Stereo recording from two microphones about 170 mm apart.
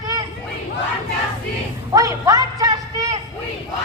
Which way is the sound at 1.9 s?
20° right (ahead or behind).